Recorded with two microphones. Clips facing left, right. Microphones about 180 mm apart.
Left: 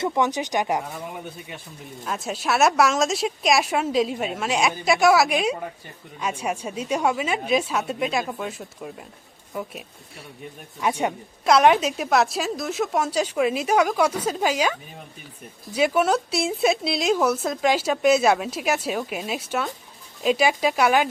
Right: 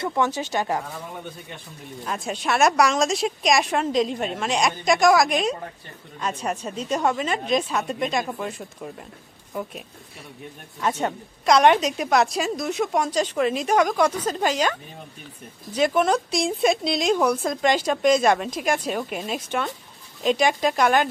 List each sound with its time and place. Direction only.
0.0 s a woman's voice: 15° left (ahead or behind)
2.0 s a woman's voice: centre (ahead or behind)
10.8 s a woman's voice: 10° left (ahead or behind)